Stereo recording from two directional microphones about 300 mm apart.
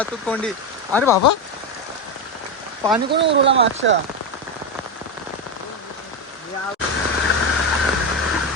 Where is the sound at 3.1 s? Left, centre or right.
Right.